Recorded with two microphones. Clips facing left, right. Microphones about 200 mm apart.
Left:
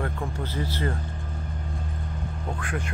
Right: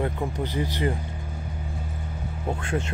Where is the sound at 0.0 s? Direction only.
15° right (ahead or behind).